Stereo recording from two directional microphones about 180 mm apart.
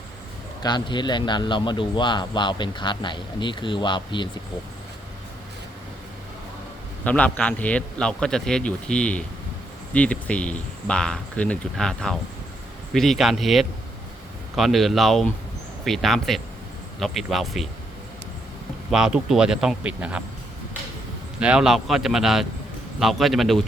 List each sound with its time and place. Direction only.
0.6 s a man's voice: 25° left (ahead or behind)
7.0 s a man's voice: 5° left (ahead or behind)
18.9 s speech: 5° right (ahead or behind)
21.3 s speech: 5° right (ahead or behind)